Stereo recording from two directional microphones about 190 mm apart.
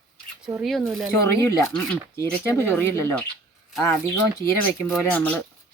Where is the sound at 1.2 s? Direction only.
15° left (ahead or behind).